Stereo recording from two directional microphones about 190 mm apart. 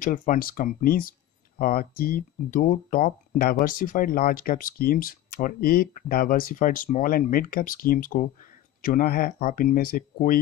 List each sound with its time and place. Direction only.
0.0 s speech: 45° left (ahead or behind)